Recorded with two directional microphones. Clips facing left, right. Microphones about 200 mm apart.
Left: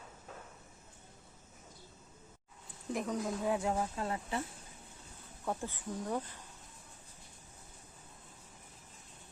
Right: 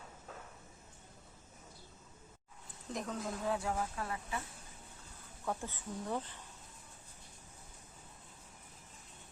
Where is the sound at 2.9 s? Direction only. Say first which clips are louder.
Left 4 dB; 10° left (ahead or behind); by 4.4 s 25° left (ahead or behind).